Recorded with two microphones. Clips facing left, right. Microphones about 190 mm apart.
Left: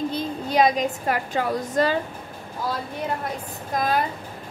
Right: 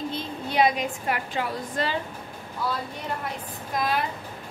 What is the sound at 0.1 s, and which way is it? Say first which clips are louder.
A woman's voice: left 5 dB; 40° left (ahead or behind).